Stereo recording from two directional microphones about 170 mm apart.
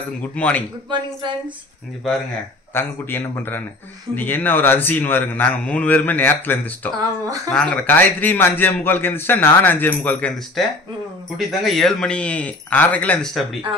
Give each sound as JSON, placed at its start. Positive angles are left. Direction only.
{"t": 0.2, "sound": "a man's voice", "side_deg": 10}
{"t": 0.8, "sound": "speech", "side_deg": -25}
{"t": 2.7, "sound": "a man's voice", "side_deg": 10}